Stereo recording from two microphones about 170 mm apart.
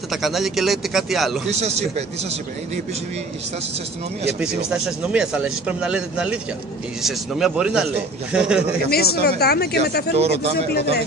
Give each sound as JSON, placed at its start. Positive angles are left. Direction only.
{"t": 0.1, "sound": "speech", "side_deg": 0}
{"t": 1.5, "sound": "speech", "side_deg": -40}
{"t": 4.4, "sound": "speech", "side_deg": -5}
{"t": 8.9, "sound": "speech", "side_deg": 70}
{"t": 10.1, "sound": "speech", "side_deg": -35}
{"t": 10.7, "sound": "speech", "side_deg": 70}